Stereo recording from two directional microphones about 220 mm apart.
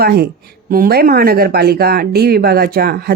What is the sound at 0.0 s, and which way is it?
Speech, 45° right (ahead or behind).